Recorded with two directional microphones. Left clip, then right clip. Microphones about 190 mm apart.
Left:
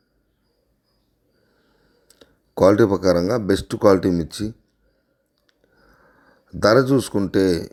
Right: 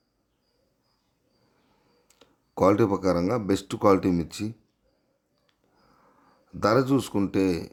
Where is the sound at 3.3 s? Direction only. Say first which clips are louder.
Left 6 dB; 15° left (ahead or behind).